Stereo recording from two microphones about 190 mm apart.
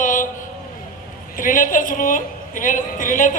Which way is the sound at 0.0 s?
45° left (ahead or behind).